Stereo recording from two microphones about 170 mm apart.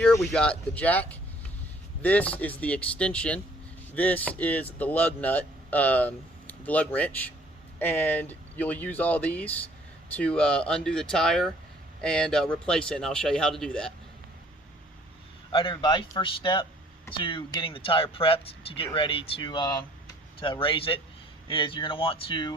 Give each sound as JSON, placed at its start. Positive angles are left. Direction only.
{"t": 0.0, "sound": "a man's voice", "side_deg": 0}
{"t": 15.5, "sound": "speech", "side_deg": 30}